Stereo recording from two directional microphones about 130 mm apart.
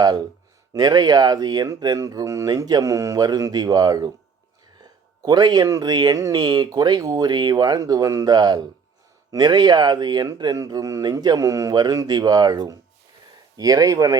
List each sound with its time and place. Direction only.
0.7 s speech: 30° right (ahead or behind)